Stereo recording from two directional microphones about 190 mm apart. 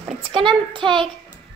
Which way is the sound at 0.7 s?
25° right (ahead or behind).